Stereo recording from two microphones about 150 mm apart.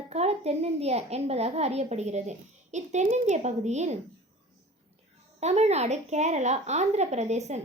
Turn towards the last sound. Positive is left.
turn(degrees=-50)  # may be behind; listen again after turning